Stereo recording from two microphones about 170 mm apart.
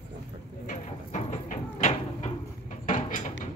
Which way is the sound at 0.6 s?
45° left (ahead or behind).